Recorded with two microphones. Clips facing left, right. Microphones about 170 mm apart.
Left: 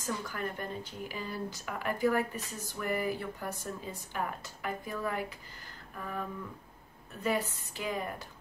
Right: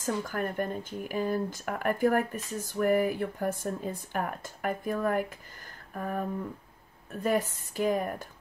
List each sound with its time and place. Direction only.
0.0 s speech: 50° right (ahead or behind)